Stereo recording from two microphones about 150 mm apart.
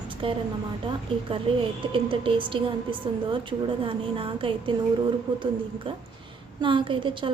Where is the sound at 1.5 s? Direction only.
35° right (ahead or behind).